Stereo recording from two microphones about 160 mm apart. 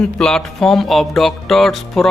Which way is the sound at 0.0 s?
5° left (ahead or behind).